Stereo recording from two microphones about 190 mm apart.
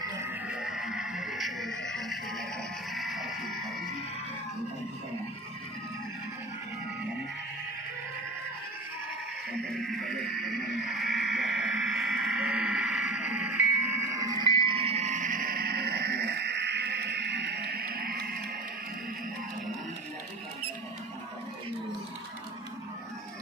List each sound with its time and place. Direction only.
0.0 s music: 15° right (ahead or behind)
2.9 s a sound: centre (ahead or behind)
9.7 s music: centre (ahead or behind); by 18.4 s 50° right (ahead or behind)